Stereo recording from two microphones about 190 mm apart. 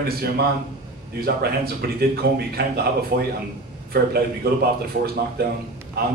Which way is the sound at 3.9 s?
55° right (ahead or behind).